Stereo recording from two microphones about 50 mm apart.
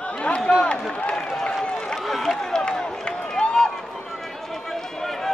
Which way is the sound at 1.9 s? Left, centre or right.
Centre.